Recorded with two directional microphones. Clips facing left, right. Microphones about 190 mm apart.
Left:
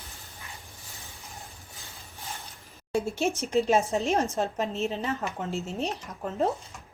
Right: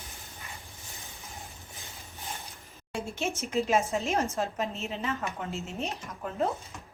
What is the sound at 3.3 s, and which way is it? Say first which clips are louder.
A woman's voice: left 2 dB; 35° left (ahead or behind).